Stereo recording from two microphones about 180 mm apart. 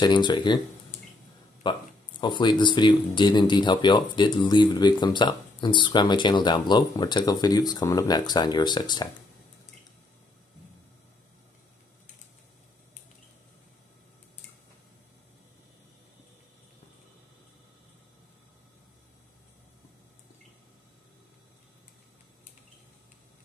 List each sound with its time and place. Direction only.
0.0 s speech: 25° left (ahead or behind)
1.6 s speech: 25° left (ahead or behind)